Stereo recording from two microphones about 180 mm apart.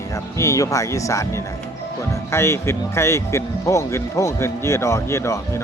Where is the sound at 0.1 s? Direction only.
15° left (ahead or behind).